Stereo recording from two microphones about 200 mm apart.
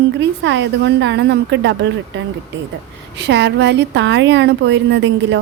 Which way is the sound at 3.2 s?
60° right (ahead or behind).